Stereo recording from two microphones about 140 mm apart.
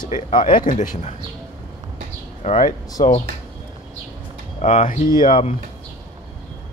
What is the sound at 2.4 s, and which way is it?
Speech, 55° left (ahead or behind).